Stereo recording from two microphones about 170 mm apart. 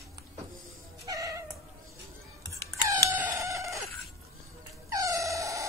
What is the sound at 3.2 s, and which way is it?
Chicken, 20° right (ahead or behind).